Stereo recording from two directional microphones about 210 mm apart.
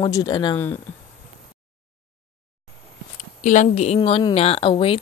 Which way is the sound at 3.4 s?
35° left (ahead or behind).